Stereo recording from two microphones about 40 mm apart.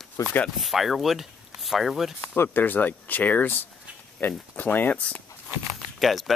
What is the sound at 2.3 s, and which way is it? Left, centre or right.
Speech, left.